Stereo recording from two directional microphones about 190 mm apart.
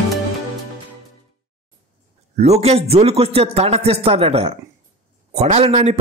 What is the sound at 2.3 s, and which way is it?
A man's voice, 35° right (ahead or behind).